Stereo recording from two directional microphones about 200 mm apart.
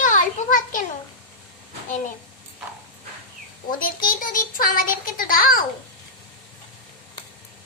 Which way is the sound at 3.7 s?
45° left (ahead or behind).